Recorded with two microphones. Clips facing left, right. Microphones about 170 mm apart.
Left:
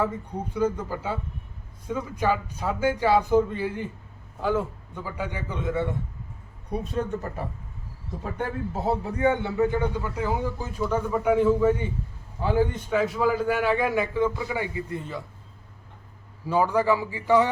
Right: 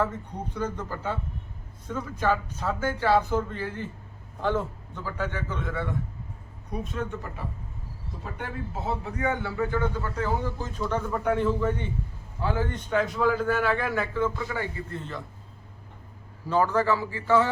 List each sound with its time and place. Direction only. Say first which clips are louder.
0.0 s a man's voice: left 1 dB; 10° left (ahead or behind)
6.7 s a man's voice: left 4 dB; 35° left (ahead or behind); by 15.2 s 10° left (ahead or behind)
16.5 s a man's voice: left 1 dB; 10° left (ahead or behind)